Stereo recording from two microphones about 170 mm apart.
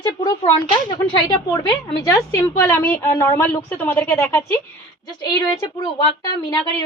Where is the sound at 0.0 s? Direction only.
25° left (ahead or behind).